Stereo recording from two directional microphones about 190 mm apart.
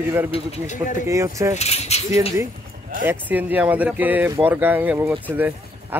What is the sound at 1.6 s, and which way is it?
Speech, 35° left (ahead or behind).